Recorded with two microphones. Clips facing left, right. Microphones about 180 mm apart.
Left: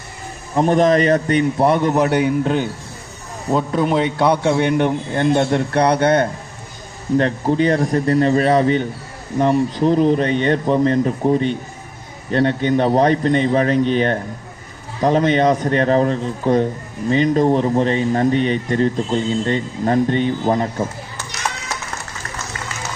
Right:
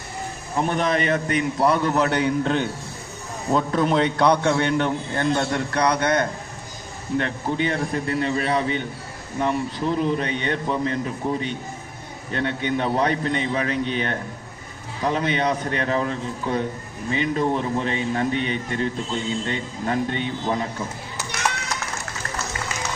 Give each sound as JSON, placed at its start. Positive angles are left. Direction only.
{"t": 0.5, "sound": "a man's voice", "side_deg": 40}